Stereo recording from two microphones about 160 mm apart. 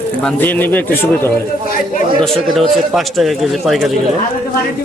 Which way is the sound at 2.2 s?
Centre (ahead or behind).